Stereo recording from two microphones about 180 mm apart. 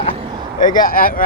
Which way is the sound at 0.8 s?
55° left (ahead or behind).